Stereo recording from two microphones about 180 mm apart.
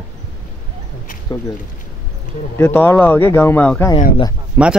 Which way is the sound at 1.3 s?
25° left (ahead or behind).